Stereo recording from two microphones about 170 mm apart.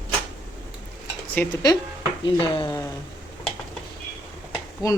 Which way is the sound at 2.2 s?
30° left (ahead or behind).